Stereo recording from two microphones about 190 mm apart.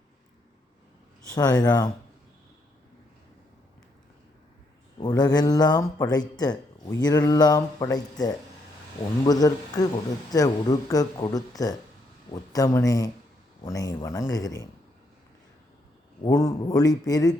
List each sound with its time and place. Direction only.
1.4 s speech: 20° left (ahead or behind)
4.9 s speech: 25° left (ahead or behind)
16.2 s speech: 15° left (ahead or behind)